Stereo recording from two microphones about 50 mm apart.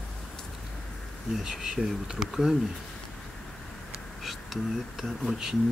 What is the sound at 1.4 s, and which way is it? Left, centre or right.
Speech, centre.